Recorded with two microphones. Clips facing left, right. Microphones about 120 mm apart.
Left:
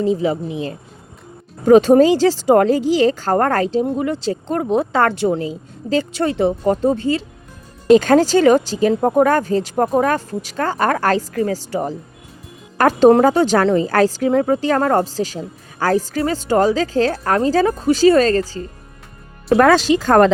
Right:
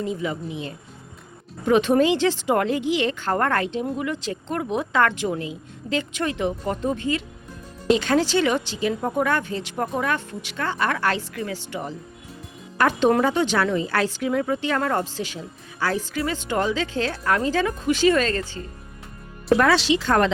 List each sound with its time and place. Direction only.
0.0 s speech: 30° left (ahead or behind)
7.9 s speech: 45° left (ahead or behind)